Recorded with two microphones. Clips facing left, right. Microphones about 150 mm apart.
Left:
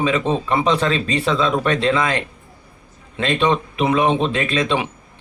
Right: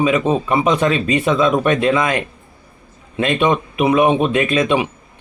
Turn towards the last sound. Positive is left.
turn(degrees=-10)  # may be behind; listen again after turning